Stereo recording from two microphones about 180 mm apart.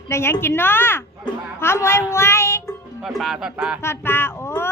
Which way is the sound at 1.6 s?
15° left (ahead or behind).